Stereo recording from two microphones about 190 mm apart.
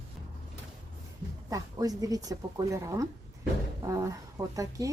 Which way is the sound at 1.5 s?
20° right (ahead or behind).